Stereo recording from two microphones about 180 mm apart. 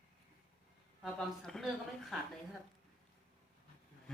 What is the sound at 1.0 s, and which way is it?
Speech, centre (ahead or behind).